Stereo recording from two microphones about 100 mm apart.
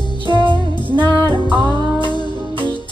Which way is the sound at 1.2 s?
50° right (ahead or behind).